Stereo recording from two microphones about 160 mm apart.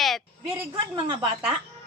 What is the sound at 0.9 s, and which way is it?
Speech, 35° right (ahead or behind).